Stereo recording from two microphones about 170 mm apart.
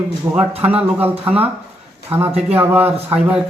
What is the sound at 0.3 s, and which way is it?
Speech, 15° right (ahead or behind).